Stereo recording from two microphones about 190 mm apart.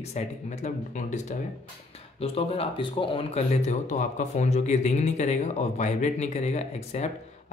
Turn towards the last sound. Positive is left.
turn(degrees=35)  # may be behind; listen again after turning